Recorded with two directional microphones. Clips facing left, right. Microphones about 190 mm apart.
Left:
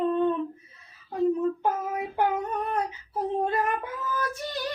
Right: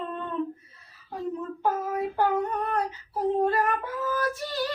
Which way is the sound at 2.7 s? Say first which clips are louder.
Even; 20° left (ahead or behind).